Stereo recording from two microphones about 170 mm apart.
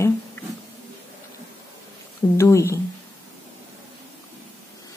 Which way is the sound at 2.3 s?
15° left (ahead or behind).